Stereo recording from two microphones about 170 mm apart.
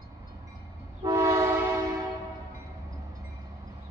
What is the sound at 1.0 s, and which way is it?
Train, 20° right (ahead or behind).